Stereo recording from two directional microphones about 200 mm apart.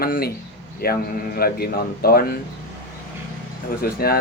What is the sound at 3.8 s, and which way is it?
Speech, 50° left (ahead or behind).